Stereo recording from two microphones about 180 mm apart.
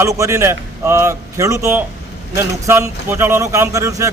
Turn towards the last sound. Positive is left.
turn(degrees=-15)  # may be behind; listen again after turning